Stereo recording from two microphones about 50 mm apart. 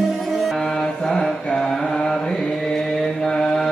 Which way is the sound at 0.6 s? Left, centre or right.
Centre.